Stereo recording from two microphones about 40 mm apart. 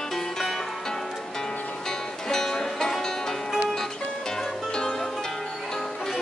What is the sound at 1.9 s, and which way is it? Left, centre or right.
Music, centre.